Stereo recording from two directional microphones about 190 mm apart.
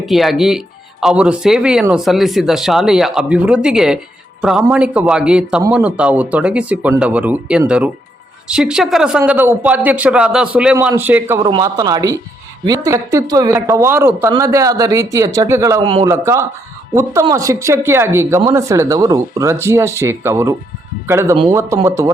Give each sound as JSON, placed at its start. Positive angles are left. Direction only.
{"t": 0.0, "sound": "speech", "side_deg": 0}
{"t": 11.4, "sound": "speech", "side_deg": -20}